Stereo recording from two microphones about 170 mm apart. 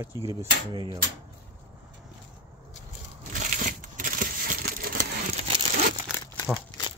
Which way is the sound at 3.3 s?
50° right (ahead or behind).